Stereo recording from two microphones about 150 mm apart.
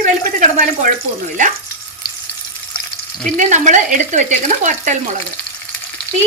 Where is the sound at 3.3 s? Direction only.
55° right (ahead or behind).